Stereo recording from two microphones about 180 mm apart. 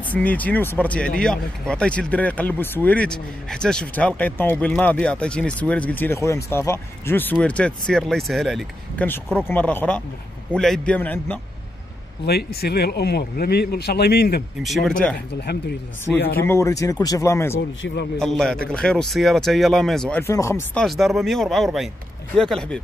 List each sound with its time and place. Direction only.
0.0 s speech: 10° left (ahead or behind)
12.3 s speech: 60° left (ahead or behind)
14.6 s speech: centre (ahead or behind)
16.3 s speech: 15° left (ahead or behind)
17.8 s a man's voice: 80° left
18.2 s speech: centre (ahead or behind)
20.7 s speech: centre (ahead or behind)